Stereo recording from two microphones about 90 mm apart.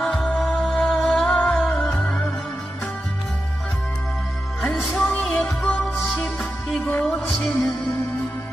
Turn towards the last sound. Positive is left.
turn(degrees=5)  # may be behind; listen again after turning